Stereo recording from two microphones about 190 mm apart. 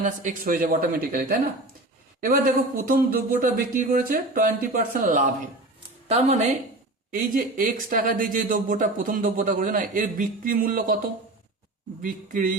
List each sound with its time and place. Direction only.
0.0 s speech: 40° right (ahead or behind)
2.7 s speech: 45° right (ahead or behind)